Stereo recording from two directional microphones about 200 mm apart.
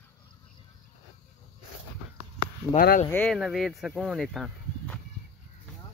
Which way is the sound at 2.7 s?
45° left (ahead or behind).